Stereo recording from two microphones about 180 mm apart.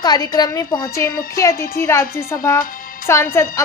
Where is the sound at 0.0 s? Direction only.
20° left (ahead or behind).